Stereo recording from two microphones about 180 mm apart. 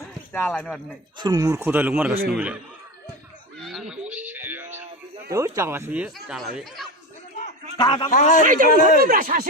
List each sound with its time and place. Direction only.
0.3 s speech: 5° left (ahead or behind)
1.2 s speech: 20° right (ahead or behind)
3.6 s a sound: centre (ahead or behind)
5.3 s speech: 15° right (ahead or behind); by 6.5 s centre (ahead or behind)
7.8 s a man's voice: 25° left (ahead or behind)
8.1 s speech: 45° left (ahead or behind)
8.4 s speech: 50° right (ahead or behind)